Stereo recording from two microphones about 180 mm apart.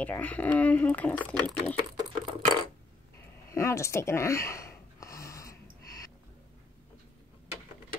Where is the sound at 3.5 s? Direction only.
15° left (ahead or behind).